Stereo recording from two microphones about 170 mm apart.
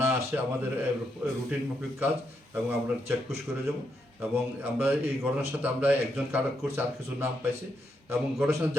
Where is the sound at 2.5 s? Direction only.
10° right (ahead or behind).